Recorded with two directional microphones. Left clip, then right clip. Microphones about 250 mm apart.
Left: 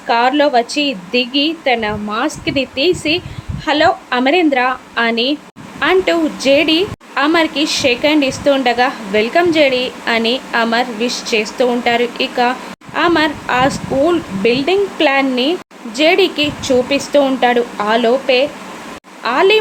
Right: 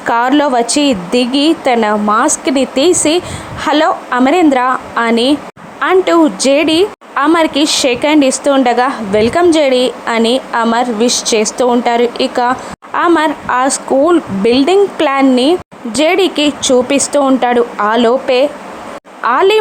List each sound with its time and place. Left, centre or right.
0.1 s a woman's voice: right